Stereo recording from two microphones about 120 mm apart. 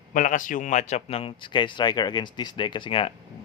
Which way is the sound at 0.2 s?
90° left.